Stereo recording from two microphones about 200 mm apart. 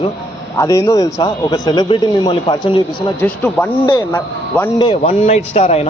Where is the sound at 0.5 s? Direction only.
15° left (ahead or behind).